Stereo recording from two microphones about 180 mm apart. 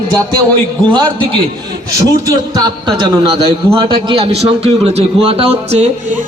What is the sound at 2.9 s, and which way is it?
A man's voice, 25° right (ahead or behind).